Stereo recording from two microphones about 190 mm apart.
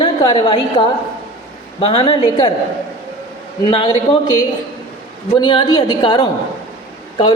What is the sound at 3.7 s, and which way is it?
Speech, 30° left (ahead or behind).